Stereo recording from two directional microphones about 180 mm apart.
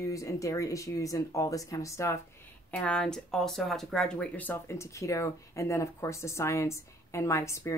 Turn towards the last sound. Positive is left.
turn(degrees=15)  # may be behind; listen again after turning